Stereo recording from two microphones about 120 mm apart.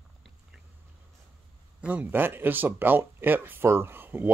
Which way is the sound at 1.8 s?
10° right (ahead or behind).